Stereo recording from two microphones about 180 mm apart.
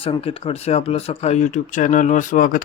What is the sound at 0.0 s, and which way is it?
Speech, 30° left (ahead or behind).